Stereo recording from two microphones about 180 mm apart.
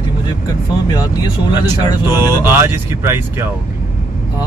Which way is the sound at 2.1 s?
15° right (ahead or behind).